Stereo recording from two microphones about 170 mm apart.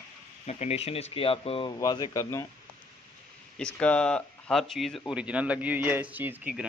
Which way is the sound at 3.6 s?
5° left (ahead or behind).